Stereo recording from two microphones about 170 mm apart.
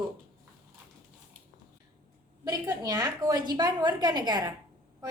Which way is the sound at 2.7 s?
20° right (ahead or behind).